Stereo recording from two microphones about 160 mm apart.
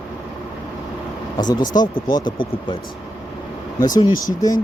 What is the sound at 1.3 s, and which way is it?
Speech, 25° left (ahead or behind).